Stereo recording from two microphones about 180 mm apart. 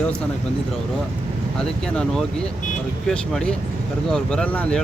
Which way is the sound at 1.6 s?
5° left (ahead or behind).